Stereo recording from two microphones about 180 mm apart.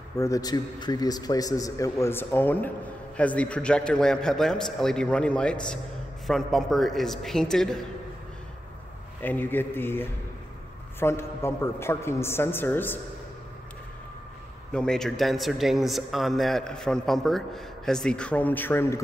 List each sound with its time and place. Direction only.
0.2 s a man's voice: 20° left (ahead or behind); by 7.8 s 5° left (ahead or behind)
9.2 s a woman's voice: 10° left (ahead or behind)
14.7 s a man's voice: 5° left (ahead or behind)